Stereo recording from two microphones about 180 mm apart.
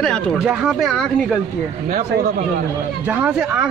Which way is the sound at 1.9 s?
50° right (ahead or behind).